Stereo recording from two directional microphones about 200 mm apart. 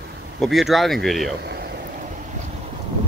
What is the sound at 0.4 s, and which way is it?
Speech, centre (ahead or behind).